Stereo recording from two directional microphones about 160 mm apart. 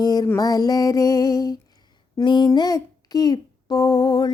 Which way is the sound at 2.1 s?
30° left (ahead or behind).